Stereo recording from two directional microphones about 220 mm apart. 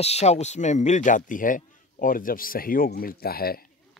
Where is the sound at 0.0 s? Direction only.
30° left (ahead or behind).